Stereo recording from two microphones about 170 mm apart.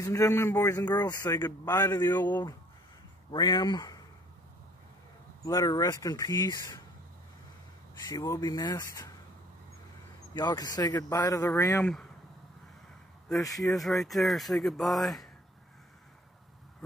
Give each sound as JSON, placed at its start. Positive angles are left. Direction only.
{"t": 0.0, "sound": "a man's voice", "side_deg": 20}
{"t": 3.3, "sound": "a man's voice", "side_deg": 25}
{"t": 5.4, "sound": "a man's voice", "side_deg": 20}
{"t": 8.1, "sound": "a man's voice", "side_deg": 20}
{"t": 10.3, "sound": "a man's voice", "side_deg": 25}
{"t": 11.8, "sound": "speech", "side_deg": 5}
{"t": 13.3, "sound": "a man's voice", "side_deg": 20}
{"t": 13.7, "sound": "speech", "side_deg": 0}